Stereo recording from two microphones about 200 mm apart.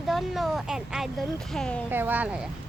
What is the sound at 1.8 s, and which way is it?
Speech, 10° right (ahead or behind).